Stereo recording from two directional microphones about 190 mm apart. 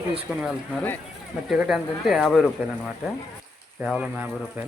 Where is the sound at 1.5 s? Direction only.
Centre (ahead or behind).